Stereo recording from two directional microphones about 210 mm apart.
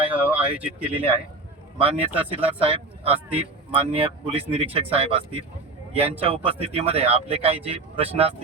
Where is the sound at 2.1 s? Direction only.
25° right (ahead or behind).